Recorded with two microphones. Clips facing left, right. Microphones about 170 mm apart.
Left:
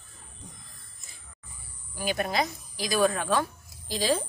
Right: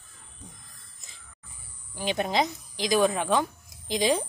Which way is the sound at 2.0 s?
20° right (ahead or behind).